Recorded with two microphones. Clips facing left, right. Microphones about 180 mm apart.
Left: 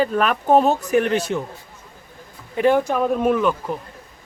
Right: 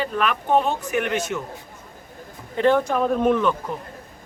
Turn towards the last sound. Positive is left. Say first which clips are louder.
# left 1 dB
turn(degrees=5)  # may be behind; listen again after turning